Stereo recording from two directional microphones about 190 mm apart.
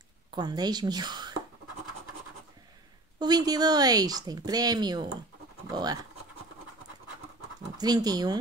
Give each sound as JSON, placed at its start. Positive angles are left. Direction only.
{"t": 0.3, "sound": "speech", "side_deg": -20}
{"t": 3.2, "sound": "speech", "side_deg": -20}
{"t": 7.7, "sound": "speech", "side_deg": -20}